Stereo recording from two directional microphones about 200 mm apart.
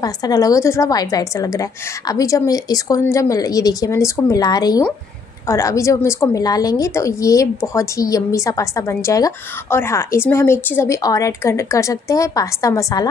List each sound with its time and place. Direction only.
0.0 s a woman's voice: 20° left (ahead or behind)